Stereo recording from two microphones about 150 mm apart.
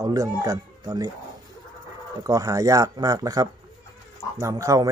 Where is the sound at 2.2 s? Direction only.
25° right (ahead or behind).